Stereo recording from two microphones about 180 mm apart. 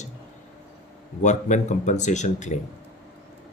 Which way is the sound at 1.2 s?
40° left (ahead or behind).